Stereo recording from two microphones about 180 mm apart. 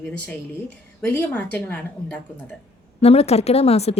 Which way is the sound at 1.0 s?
10° left (ahead or behind).